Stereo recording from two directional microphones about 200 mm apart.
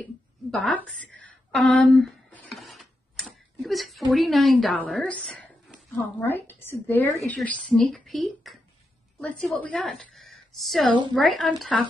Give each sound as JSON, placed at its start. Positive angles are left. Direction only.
{"t": 0.5, "sound": "a woman's voice", "side_deg": 5}
{"t": 0.9, "sound": "a sound", "side_deg": 5}
{"t": 6.1, "sound": "a woman's voice", "side_deg": 10}